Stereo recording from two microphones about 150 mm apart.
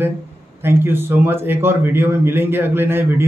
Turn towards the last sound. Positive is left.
turn(degrees=-15)  # may be behind; listen again after turning